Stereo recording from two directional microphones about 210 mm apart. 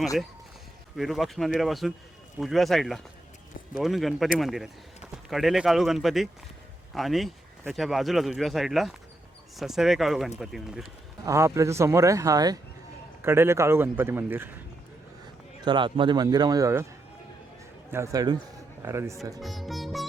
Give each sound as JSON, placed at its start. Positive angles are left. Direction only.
{"t": 0.9, "sound": "speech", "side_deg": 0}
{"t": 11.3, "sound": "a man's voice", "side_deg": -15}
{"t": 15.6, "sound": "speech", "side_deg": -20}
{"t": 17.9, "sound": "a man's voice", "side_deg": -15}
{"t": 19.4, "sound": "speech", "side_deg": 0}